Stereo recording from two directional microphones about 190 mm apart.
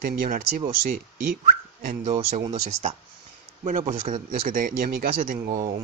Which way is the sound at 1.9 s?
40° right (ahead or behind).